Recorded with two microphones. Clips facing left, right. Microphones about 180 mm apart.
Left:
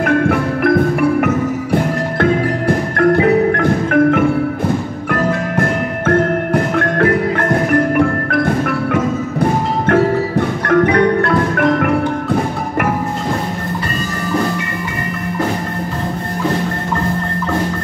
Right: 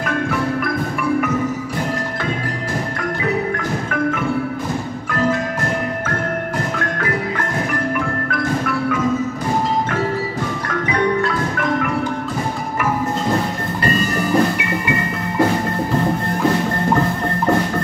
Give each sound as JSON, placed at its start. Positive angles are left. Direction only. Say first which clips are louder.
{"t": 0.0, "sound": "music", "louder": "left 7 dB", "side_deg": 60}
{"t": 6.0, "sound": "music", "louder": "left 8 dB", "side_deg": 60}
{"t": 7.9, "sound": "wood block", "louder": "left 7 dB", "side_deg": 55}